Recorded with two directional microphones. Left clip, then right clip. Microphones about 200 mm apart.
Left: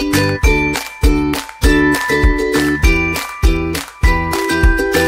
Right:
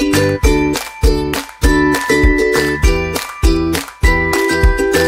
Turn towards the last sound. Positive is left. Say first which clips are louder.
# right 1 dB
turn(degrees=0)  # may be behind; listen again after turning